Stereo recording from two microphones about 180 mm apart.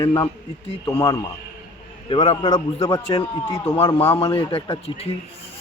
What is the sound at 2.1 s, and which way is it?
A man's voice, 30° left (ahead or behind).